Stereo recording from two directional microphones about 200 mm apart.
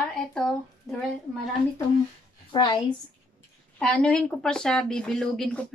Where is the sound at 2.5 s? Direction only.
25° left (ahead or behind).